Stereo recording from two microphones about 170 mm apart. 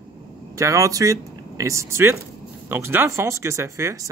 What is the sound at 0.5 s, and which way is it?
Speech, 20° right (ahead or behind).